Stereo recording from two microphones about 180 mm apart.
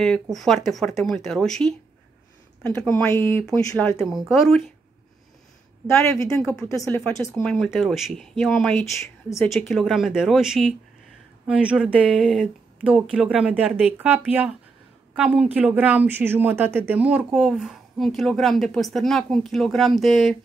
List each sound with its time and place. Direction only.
0.0 s speech: centre (ahead or behind)
4.0 s speech: centre (ahead or behind)
5.9 s speech: 15° left (ahead or behind)
7.4 s speech: centre (ahead or behind)